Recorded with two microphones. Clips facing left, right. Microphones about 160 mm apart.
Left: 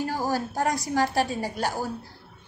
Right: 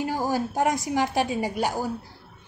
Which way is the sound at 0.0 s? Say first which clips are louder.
Right 1 dB; 15° right (ahead or behind).